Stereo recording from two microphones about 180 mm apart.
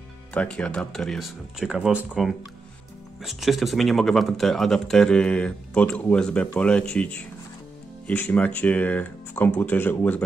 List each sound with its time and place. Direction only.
0.3 s speech: 5° left (ahead or behind)